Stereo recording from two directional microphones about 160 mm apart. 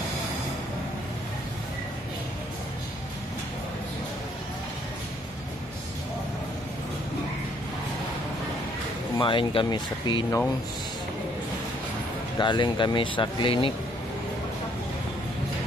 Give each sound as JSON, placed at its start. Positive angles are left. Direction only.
{"t": 9.2, "sound": "speech", "side_deg": 30}
{"t": 12.4, "sound": "speech", "side_deg": 30}